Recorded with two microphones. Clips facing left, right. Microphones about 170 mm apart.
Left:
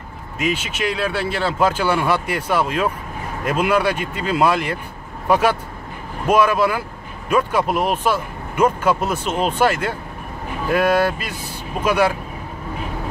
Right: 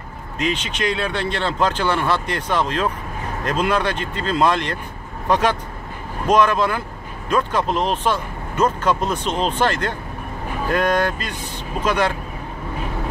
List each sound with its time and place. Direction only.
0.4 s speech: 5° left (ahead or behind)